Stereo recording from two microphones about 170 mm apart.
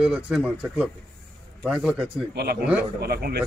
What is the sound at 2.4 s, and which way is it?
A man's voice, 65° right (ahead or behind).